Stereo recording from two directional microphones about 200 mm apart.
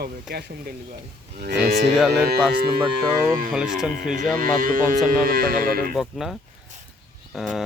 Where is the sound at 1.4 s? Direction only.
55° right (ahead or behind).